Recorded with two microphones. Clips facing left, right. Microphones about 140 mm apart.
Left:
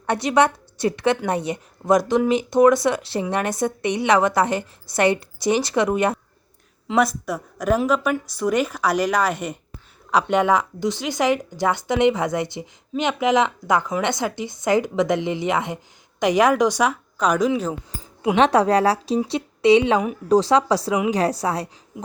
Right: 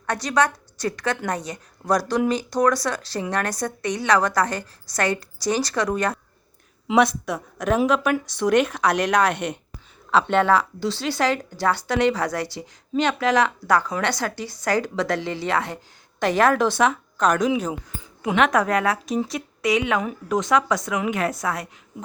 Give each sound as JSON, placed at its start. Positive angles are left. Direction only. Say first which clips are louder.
{"t": 0.0, "sound": "a woman's voice", "louder": "left 3 dB", "side_deg": 25}
{"t": 7.3, "sound": "a woman's voice", "louder": "left 2 dB", "side_deg": 5}
{"t": 17.5, "sound": "speech", "louder": "left 1 dB", "side_deg": -10}
{"t": 18.3, "sound": "speech", "louder": "left 3 dB", "side_deg": 30}